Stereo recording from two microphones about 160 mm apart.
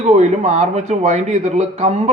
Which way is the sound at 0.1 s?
45° right (ahead or behind).